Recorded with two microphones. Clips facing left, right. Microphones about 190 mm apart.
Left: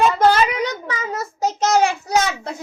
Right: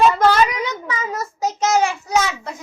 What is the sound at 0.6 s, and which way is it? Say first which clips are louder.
Child singing: left 1 dB; 35° left (ahead or behind).